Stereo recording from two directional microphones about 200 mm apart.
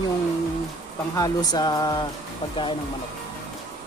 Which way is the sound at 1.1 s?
20° left (ahead or behind).